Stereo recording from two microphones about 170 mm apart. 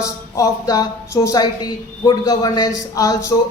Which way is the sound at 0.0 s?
20° left (ahead or behind).